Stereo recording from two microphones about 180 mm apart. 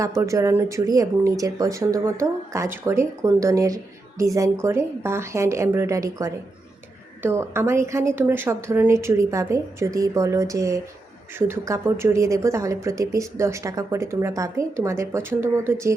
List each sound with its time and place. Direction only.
0.0 s a woman's voice: 15° right (ahead or behind)